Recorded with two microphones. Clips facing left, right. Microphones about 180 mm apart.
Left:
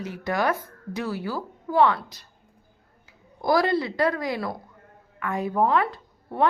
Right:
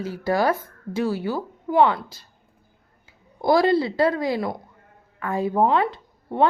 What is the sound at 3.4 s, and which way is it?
Speech, 25° right (ahead or behind).